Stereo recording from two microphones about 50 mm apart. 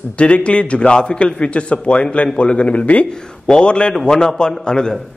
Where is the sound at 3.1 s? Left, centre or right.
Centre.